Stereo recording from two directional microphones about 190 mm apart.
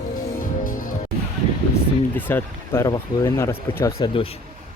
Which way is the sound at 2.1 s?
10° left (ahead or behind).